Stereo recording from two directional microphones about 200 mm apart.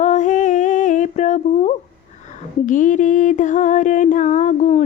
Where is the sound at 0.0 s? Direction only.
35° left (ahead or behind).